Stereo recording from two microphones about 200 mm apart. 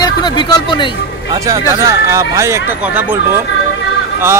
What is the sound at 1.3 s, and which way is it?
Speech, 15° right (ahead or behind).